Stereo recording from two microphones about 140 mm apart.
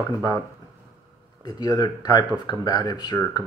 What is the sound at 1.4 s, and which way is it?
A man's voice, 30° left (ahead or behind).